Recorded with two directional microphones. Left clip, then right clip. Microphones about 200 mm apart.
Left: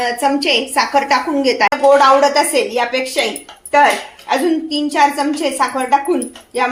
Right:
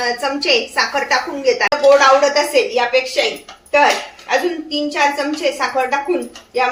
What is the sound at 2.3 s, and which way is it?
Speech, 40° left (ahead or behind).